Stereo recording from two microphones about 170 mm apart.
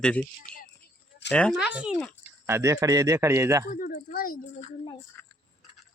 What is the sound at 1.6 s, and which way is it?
Speech, 5° right (ahead or behind).